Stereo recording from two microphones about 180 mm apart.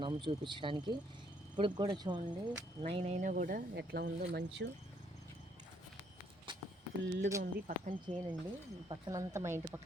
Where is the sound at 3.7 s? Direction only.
65° right (ahead or behind).